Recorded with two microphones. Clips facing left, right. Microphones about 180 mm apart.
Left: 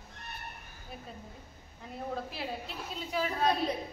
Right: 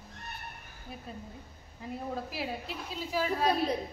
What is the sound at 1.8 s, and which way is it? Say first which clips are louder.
A woman's voice: right 1 dB; 5° right (ahead or behind).